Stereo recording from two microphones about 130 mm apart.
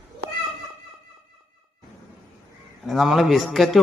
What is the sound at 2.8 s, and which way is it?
Speech, centre (ahead or behind).